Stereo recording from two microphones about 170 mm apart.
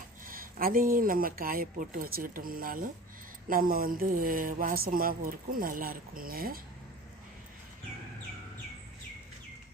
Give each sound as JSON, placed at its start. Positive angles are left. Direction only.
{"t": 0.3, "sound": "speech", "side_deg": -55}